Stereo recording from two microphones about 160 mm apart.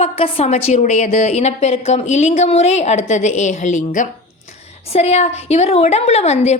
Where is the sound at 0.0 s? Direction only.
40° left (ahead or behind).